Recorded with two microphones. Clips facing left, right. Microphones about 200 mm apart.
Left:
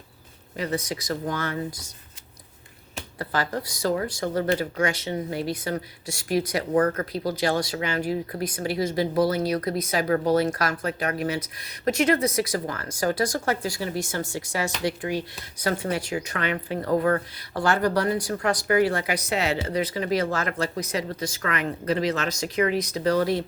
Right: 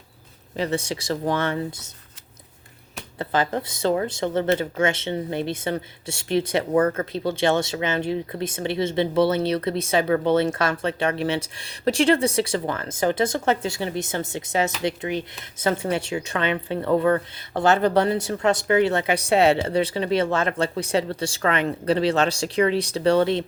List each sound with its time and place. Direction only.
0.5 s speech: 30° right (ahead or behind)
3.2 s speech: 20° right (ahead or behind)